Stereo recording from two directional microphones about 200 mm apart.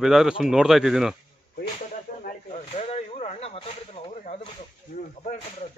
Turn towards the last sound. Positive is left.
turn(degrees=30)  # may be behind; listen again after turning